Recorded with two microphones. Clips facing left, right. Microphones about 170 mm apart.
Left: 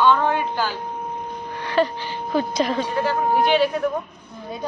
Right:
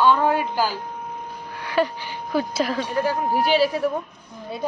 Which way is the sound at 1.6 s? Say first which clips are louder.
Left 1 dB; 10° right (ahead or behind).